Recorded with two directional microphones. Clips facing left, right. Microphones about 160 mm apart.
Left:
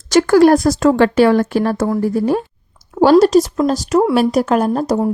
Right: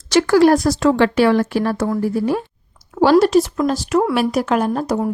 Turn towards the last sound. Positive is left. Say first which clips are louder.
# left 3 dB
turn(degrees=35)  # may be behind; listen again after turning